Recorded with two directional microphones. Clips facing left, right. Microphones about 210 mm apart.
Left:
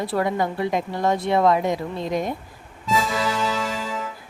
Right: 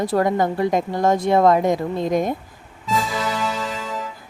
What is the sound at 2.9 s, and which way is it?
Music, centre (ahead or behind).